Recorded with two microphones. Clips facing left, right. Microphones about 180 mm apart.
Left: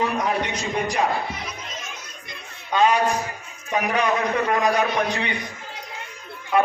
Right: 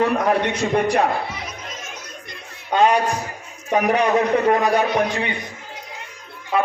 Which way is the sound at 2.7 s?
55° right (ahead or behind).